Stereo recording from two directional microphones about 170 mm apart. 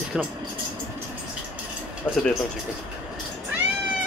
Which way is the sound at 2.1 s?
10° left (ahead or behind).